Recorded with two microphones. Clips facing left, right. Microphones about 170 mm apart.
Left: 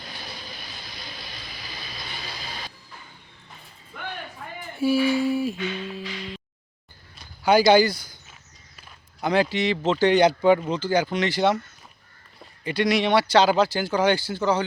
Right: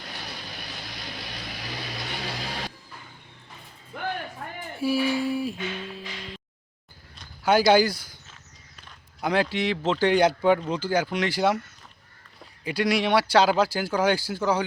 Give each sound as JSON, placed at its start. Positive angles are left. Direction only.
{"t": 0.1, "sound": "vehicle", "side_deg": -65}
{"t": 4.8, "sound": "a sound", "side_deg": 0}
{"t": 7.2, "sound": "a sound", "side_deg": 0}
{"t": 9.2, "sound": "speech", "side_deg": 0}
{"t": 10.1, "sound": "speech", "side_deg": -5}
{"t": 12.6, "sound": "speech", "side_deg": -5}